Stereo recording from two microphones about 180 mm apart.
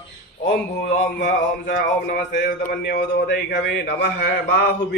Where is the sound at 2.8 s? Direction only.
70° left (ahead or behind).